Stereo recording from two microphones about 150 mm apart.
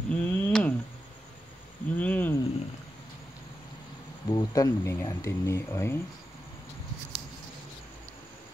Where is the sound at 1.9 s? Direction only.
10° left (ahead or behind).